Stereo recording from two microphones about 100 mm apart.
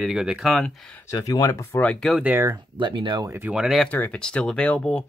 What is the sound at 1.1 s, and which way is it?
Speech, 35° left (ahead or behind).